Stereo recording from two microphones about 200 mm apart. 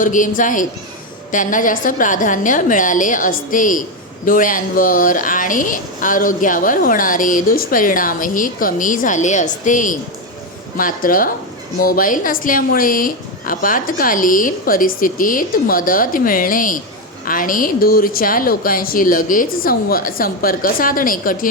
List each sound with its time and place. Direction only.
0.0 s a woman's voice: 40° left (ahead or behind)